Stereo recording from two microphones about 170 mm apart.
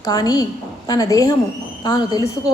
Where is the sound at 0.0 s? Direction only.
20° left (ahead or behind).